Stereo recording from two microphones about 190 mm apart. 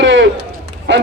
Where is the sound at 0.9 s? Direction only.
75° right (ahead or behind).